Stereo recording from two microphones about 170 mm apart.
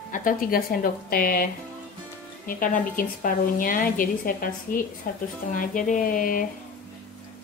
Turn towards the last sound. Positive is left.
turn(degrees=55)  # may be behind; listen again after turning